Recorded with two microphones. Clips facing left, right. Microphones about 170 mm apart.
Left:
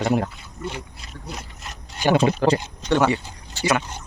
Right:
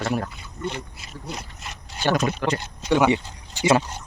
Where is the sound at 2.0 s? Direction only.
15° left (ahead or behind).